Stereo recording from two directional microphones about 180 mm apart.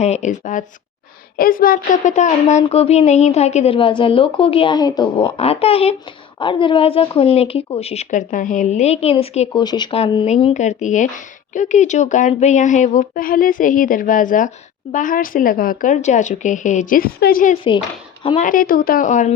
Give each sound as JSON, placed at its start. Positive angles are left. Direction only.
{"t": 0.0, "sound": "a woman's voice", "side_deg": 40}
{"t": 9.6, "sound": "a woman's voice", "side_deg": 25}
{"t": 18.2, "sound": "speech", "side_deg": 30}
{"t": 18.4, "sound": "speech", "side_deg": 50}